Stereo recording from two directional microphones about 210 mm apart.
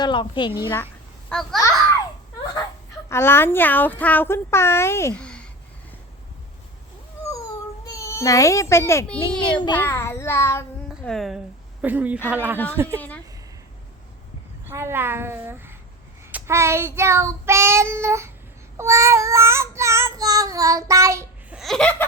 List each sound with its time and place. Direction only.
0.0 s a woman's voice: 20° left (ahead or behind)
1.3 s laughter: centre (ahead or behind)
3.1 s speech: 10° left (ahead or behind)
7.9 s a child's voice: 15° left (ahead or behind); by 12.2 s 10° right (ahead or behind)
12.3 s child singing: 10° right (ahead or behind)
13.0 s speech: 5° left (ahead or behind)
14.7 s child singing: 10° right (ahead or behind)
21.6 s laughter: 5° left (ahead or behind)